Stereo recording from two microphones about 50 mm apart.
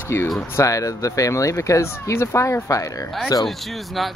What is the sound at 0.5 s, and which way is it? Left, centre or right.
Speech, left.